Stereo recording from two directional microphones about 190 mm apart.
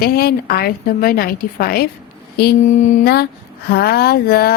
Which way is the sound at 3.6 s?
55° left (ahead or behind).